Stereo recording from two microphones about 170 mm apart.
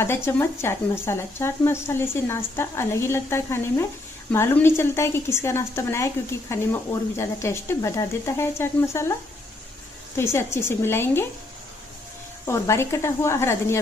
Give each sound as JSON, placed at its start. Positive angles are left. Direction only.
{"t": 0.0, "sound": "speech", "side_deg": 15}
{"t": 10.1, "sound": "speech", "side_deg": 15}
{"t": 12.4, "sound": "speech", "side_deg": 15}